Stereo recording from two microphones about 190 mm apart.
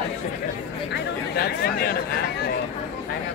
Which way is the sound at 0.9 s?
55° left (ahead or behind).